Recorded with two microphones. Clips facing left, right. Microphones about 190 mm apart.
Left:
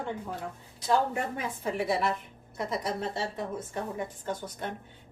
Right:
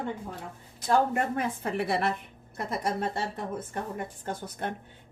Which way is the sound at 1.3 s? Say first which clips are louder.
Right 2 dB; 60° right (ahead or behind).